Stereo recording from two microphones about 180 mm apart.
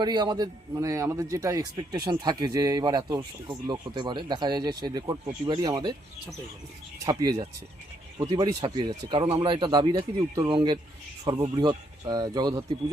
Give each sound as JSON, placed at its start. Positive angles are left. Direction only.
{"t": 0.0, "sound": "speech", "side_deg": -25}
{"t": 7.0, "sound": "speech", "side_deg": -20}